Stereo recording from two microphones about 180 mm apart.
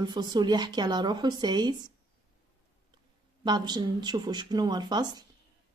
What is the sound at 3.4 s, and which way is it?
Speech, 25° right (ahead or behind).